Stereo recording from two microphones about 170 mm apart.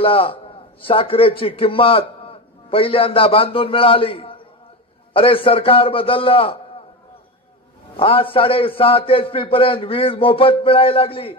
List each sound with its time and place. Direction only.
0.0 s a man's voice: 35° left (ahead or behind)
7.9 s a man's voice: 30° left (ahead or behind)